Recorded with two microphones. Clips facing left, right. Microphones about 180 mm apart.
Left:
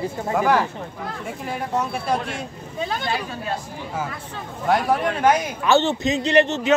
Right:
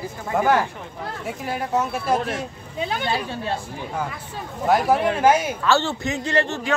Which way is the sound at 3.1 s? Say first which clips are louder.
Right 1 dB; 30° right (ahead or behind).